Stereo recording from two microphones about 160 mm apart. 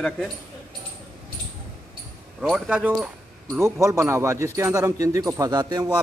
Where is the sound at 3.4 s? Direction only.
15° right (ahead or behind).